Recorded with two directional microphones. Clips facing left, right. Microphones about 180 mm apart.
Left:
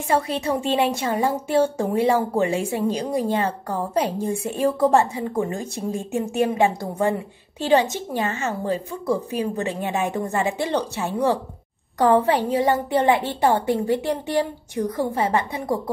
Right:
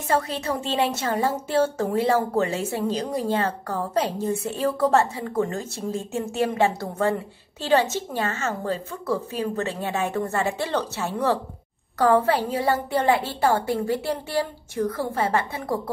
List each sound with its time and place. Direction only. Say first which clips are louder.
0.1 s a woman's voice: left 2 dB; 15° left (ahead or behind)